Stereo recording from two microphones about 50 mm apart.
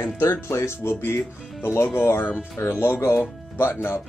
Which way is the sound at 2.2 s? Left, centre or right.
Left.